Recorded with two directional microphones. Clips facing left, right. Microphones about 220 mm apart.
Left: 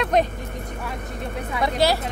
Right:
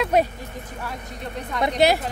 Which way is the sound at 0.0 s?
10° right (ahead or behind).